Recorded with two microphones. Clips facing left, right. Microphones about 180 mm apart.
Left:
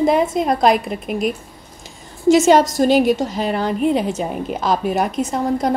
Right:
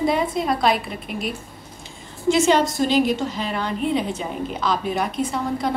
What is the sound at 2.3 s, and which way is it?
A woman's voice, 45° left (ahead or behind).